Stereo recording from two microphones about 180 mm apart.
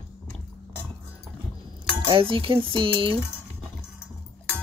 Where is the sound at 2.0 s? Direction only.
30° right (ahead or behind).